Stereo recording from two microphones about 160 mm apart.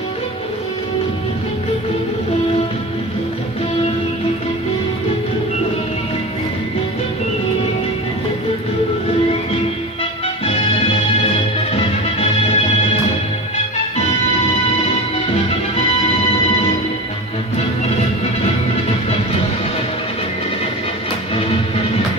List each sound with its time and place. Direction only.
10.4 s music: 35° left (ahead or behind)
21.4 s music: 35° left (ahead or behind)